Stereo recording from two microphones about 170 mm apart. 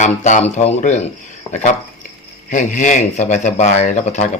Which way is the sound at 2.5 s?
50° left (ahead or behind).